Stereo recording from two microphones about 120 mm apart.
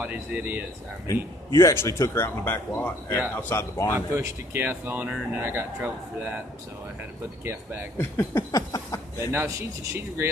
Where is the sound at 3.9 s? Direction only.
20° right (ahead or behind).